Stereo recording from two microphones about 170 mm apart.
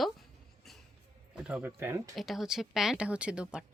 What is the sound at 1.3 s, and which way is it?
Speech, 5° right (ahead or behind).